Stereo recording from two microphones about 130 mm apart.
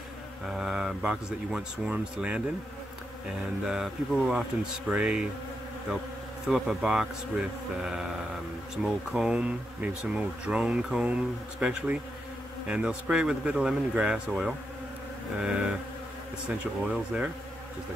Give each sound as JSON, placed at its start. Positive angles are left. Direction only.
{"t": 0.5, "sound": "speech", "side_deg": -5}
{"t": 3.6, "sound": "speech", "side_deg": -5}
{"t": 6.4, "sound": "speech", "side_deg": 0}
{"t": 16.8, "sound": "speech", "side_deg": -5}